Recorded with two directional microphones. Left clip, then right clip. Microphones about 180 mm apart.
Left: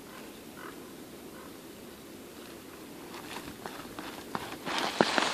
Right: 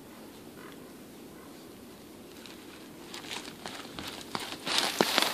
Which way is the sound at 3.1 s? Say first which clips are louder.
Right 3 dB; 15° right (ahead or behind).